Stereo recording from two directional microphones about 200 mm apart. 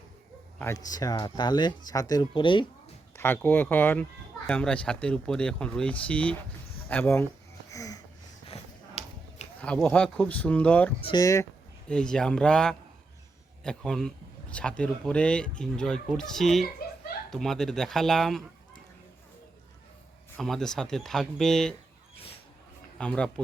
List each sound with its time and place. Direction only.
0.6 s speech: 15° left (ahead or behind)
3.2 s speech: 10° left (ahead or behind)
7.7 s wheeze: 15° left (ahead or behind)
8.5 s a sound: 30° left (ahead or behind)
9.6 s speech: 5° left (ahead or behind)
11.0 s speech: 20° left (ahead or behind)
11.9 s speech: 5° left (ahead or behind)
20.3 s speech: centre (ahead or behind)
23.0 s speech: 5° left (ahead or behind)